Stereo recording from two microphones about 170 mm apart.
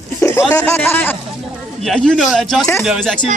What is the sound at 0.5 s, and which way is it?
A man's voice, 15° left (ahead or behind).